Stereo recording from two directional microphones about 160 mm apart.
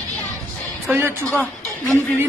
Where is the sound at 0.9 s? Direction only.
15° right (ahead or behind).